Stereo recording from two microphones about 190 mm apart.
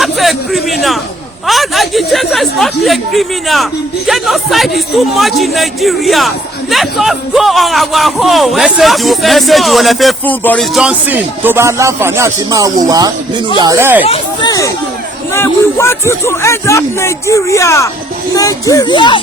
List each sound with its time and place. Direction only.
0.0 s speech: centre (ahead or behind)
10.8 s speech: 5° right (ahead or behind)
14.0 s chatter: 30° left (ahead or behind)
15.3 s speech: 15° left (ahead or behind)